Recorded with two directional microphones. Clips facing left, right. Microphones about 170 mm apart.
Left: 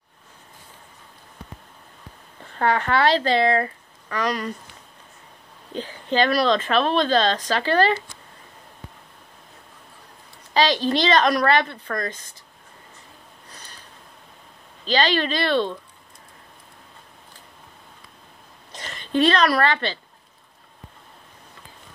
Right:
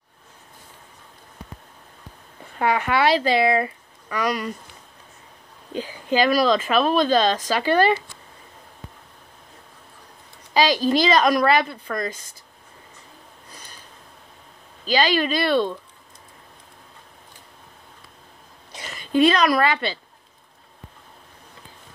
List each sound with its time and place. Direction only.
2.4 s speech: 10° right (ahead or behind)
5.7 s speech: 10° right (ahead or behind)
10.5 s speech: 10° right (ahead or behind)
14.9 s speech: 10° right (ahead or behind)
18.7 s speech: 10° right (ahead or behind)